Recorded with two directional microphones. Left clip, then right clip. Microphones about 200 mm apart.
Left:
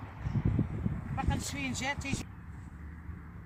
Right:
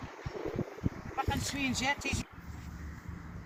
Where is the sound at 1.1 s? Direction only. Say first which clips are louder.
Right 2 dB; 10° left (ahead or behind).